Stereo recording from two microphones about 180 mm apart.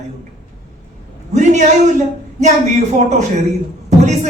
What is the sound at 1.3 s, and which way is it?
Speech, 40° right (ahead or behind).